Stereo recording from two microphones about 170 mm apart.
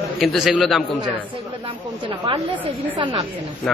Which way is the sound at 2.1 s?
30° right (ahead or behind).